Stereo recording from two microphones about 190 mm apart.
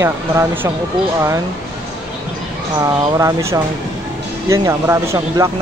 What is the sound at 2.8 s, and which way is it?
Speech, 15° right (ahead or behind).